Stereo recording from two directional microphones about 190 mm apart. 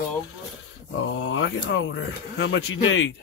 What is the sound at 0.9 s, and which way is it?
Speech, 85° left.